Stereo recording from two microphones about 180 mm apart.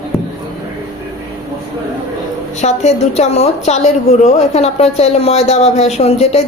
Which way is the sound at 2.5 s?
40° left (ahead or behind).